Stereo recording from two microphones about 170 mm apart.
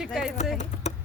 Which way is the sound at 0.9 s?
40° left (ahead or behind).